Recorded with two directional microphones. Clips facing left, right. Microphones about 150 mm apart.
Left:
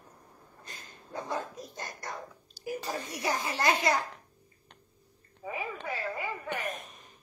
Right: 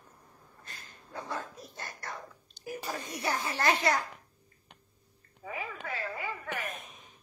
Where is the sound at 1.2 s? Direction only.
15° left (ahead or behind).